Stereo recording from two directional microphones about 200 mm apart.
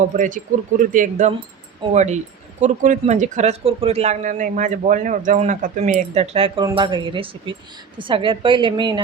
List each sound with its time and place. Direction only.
0.2 s a woman's voice: 40° right (ahead or behind); by 9.0 s 25° right (ahead or behind)